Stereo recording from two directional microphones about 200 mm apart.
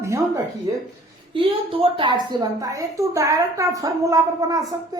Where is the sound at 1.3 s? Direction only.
25° right (ahead or behind).